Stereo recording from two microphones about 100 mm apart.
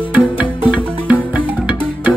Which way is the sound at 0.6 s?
10° right (ahead or behind).